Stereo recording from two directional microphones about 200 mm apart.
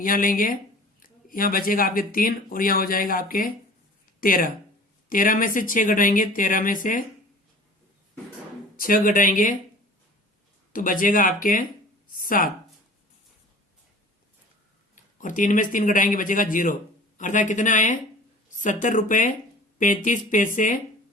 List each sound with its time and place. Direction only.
0.0 s speech: 45° left (ahead or behind)
8.7 s speech: 45° left (ahead or behind)
10.7 s speech: 45° left (ahead or behind)
12.1 s a sound: 45° left (ahead or behind)
15.2 s speech: 40° left (ahead or behind)